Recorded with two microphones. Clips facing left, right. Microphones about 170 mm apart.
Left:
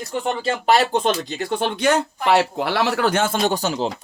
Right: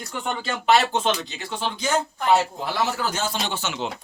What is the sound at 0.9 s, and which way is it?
Speech, 55° left (ahead or behind).